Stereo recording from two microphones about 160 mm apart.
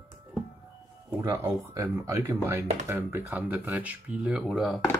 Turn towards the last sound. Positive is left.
turn(degrees=0)  # may be behind; listen again after turning